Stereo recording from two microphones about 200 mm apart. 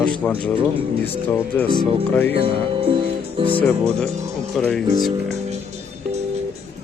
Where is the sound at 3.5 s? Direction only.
5° left (ahead or behind).